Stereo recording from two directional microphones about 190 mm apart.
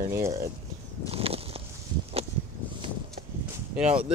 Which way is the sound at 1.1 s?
30° right (ahead or behind).